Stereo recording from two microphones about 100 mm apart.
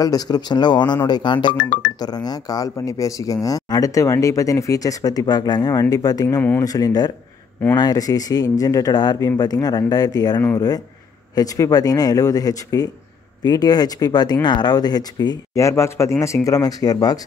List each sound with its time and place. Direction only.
0.0 s speech: 40° left (ahead or behind)